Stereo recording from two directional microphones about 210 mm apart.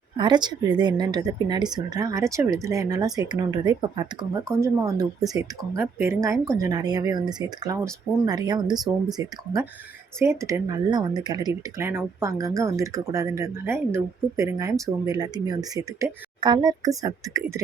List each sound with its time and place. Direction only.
0.2 s speech: 20° right (ahead or behind)